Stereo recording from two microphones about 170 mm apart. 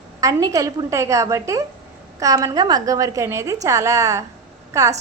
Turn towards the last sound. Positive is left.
turn(degrees=-20)  # may be behind; listen again after turning